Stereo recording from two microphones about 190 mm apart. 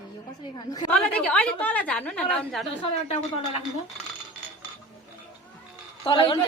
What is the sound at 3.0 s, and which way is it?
Speech, 35° left (ahead or behind).